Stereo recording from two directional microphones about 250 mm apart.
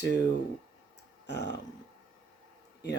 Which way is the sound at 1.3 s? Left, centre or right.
Left.